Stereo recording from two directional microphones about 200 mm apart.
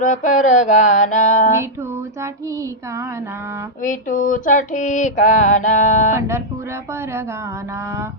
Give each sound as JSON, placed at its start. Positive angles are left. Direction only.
{"t": 0.0, "sound": "female singing", "side_deg": 40}
{"t": 3.8, "sound": "female singing", "side_deg": 40}
{"t": 6.1, "sound": "speech", "side_deg": -15}